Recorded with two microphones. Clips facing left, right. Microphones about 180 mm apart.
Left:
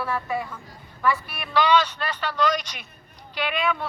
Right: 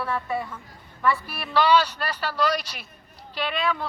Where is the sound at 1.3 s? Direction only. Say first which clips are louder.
Right 1 dB; 35° right (ahead or behind).